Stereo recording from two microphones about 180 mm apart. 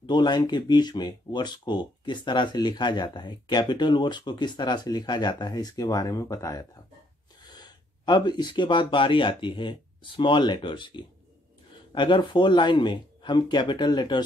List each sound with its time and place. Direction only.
0.0 s speech: 25° left (ahead or behind)